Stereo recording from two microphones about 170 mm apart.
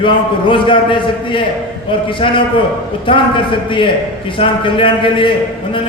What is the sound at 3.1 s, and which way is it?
A man's voice, 30° left (ahead or behind).